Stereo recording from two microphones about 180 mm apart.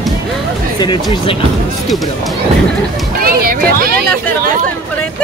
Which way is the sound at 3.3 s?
55° right (ahead or behind).